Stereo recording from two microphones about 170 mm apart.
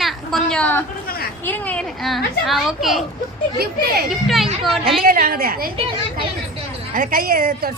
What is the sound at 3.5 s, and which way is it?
Speech, 65° right (ahead or behind).